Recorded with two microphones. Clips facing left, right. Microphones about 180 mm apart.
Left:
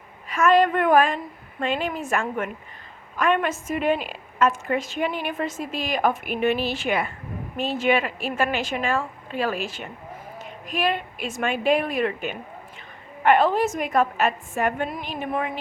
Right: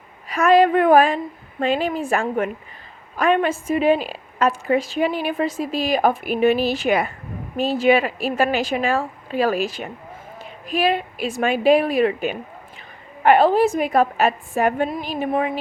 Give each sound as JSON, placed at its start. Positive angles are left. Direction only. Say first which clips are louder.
{"t": 0.3, "sound": "a woman's voice", "louder": "right 4 dB", "side_deg": -35}